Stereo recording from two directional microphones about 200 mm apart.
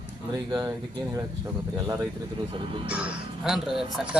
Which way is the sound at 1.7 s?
15° right (ahead or behind).